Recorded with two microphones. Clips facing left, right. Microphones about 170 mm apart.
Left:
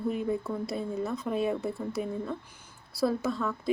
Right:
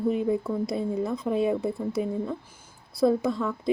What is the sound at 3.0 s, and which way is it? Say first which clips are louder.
Speech: right 5 dB; 15° right (ahead or behind).